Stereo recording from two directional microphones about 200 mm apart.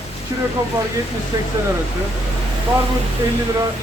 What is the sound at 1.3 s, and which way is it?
Speech, 20° right (ahead or behind).